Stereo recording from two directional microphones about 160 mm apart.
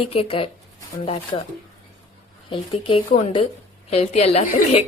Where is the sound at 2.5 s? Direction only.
35° left (ahead or behind).